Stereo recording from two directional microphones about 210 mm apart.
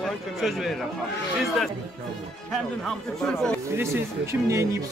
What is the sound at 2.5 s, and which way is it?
A man's voice, centre (ahead or behind).